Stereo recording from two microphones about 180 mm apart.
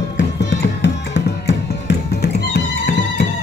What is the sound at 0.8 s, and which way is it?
Music, 75° left (ahead or behind).